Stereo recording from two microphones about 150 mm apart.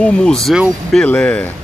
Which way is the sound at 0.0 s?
5° left (ahead or behind).